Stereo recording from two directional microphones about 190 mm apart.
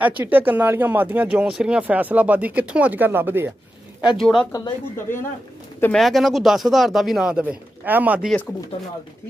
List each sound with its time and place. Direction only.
0.0 s speech: 10° right (ahead or behind)
4.5 s speech: 15° left (ahead or behind)
5.8 s speech: 5° left (ahead or behind)
8.7 s speech: 30° left (ahead or behind)